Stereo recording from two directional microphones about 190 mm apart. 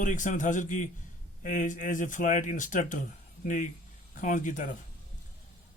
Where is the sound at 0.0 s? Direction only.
40° left (ahead or behind).